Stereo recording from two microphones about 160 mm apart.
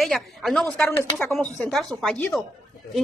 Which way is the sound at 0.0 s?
Centre (ahead or behind).